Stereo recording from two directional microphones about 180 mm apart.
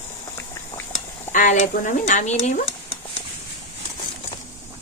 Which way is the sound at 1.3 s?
45° left (ahead or behind).